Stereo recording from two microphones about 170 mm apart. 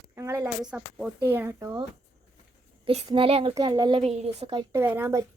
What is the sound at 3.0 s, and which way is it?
A child's voice, 30° right (ahead or behind).